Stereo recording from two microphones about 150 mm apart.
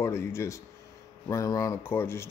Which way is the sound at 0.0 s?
20° left (ahead or behind).